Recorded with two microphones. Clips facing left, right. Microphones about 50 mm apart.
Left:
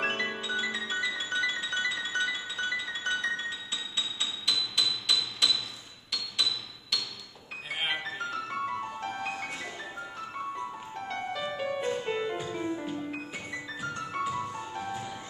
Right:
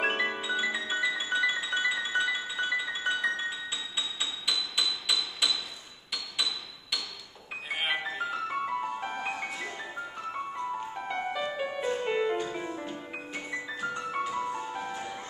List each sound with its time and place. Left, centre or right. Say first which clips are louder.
0.0 s music: right 2 dB; centre
6.1 s hammer: left 1 dB; centre
7.7 s music: right 1 dB; centre
11.0 s music: left 1 dB; centre